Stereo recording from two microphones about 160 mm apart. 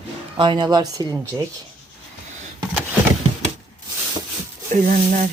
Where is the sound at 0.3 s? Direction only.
30° right (ahead or behind).